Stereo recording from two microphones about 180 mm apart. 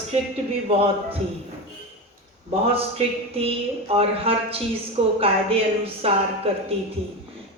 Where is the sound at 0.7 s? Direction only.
30° right (ahead or behind).